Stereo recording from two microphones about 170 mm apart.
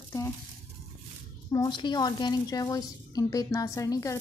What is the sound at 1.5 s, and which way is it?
A woman's voice, 25° left (ahead or behind).